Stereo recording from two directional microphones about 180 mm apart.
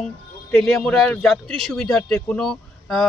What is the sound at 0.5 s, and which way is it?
A man's voice, centre (ahead or behind).